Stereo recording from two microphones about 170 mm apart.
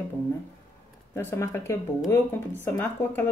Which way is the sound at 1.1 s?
15° left (ahead or behind).